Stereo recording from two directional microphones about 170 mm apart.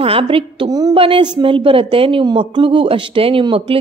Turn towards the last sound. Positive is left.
turn(degrees=-30)  # may be behind; listen again after turning